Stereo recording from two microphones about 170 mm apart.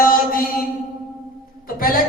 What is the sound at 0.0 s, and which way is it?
Mantra, 55° left (ahead or behind).